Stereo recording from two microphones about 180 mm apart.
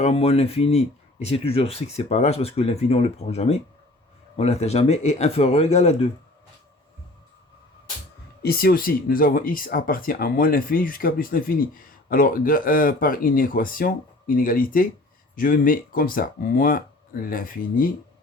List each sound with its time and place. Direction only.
0.0 s speech: 35° left (ahead or behind)
8.4 s speech: 60° left (ahead or behind)